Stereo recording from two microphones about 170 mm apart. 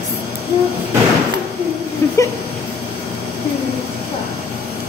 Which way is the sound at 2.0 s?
15° left (ahead or behind).